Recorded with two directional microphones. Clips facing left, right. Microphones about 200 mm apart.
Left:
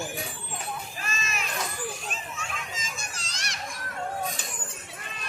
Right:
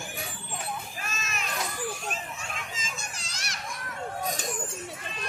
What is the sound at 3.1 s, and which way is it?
Children playing, 5° right (ahead or behind).